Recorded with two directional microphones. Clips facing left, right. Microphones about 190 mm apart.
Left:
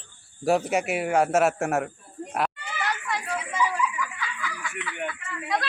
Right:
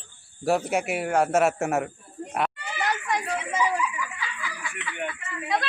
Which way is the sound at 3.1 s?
20° right (ahead or behind).